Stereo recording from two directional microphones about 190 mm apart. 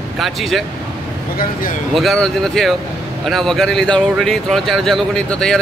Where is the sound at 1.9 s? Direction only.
Centre (ahead or behind).